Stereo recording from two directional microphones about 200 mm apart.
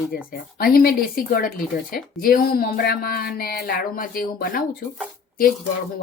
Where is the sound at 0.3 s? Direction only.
50° left (ahead or behind).